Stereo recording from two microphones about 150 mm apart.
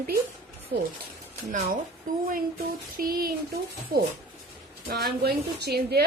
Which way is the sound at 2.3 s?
70° right (ahead or behind).